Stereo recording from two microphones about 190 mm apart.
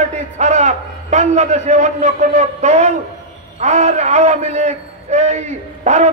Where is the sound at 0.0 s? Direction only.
35° right (ahead or behind).